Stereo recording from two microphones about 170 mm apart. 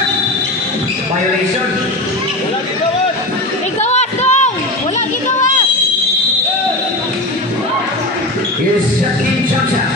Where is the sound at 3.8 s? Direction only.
40° left (ahead or behind).